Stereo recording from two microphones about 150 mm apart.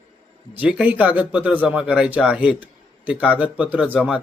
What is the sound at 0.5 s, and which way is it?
Speech, 10° right (ahead or behind).